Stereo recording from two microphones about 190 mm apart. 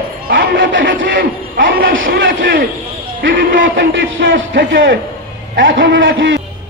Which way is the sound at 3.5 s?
80° right.